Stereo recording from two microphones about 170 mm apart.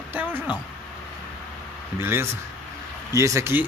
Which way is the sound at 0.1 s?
10° right (ahead or behind).